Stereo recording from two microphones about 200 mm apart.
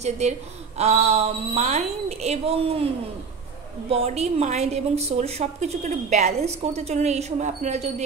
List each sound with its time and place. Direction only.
0.0 s a woman's voice: 35° right (ahead or behind)
3.9 s a woman's voice: 30° right (ahead or behind)